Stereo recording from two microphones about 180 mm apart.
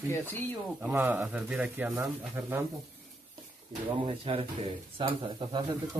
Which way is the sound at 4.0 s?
30° right (ahead or behind).